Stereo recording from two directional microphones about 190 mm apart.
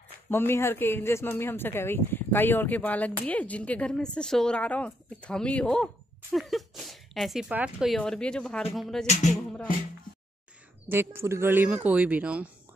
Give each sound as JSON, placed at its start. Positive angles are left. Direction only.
{"t": 0.3, "sound": "speech", "side_deg": 10}
{"t": 9.0, "sound": "music", "side_deg": 35}
{"t": 10.9, "sound": "speech", "side_deg": -15}